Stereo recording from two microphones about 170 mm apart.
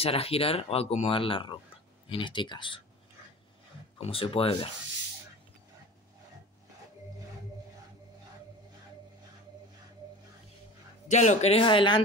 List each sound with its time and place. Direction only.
0.0 s speech: 35° left (ahead or behind)
4.0 s speech: 35° left (ahead or behind)
11.1 s speech: 45° left (ahead or behind); by 12.0 s 30° left (ahead or behind)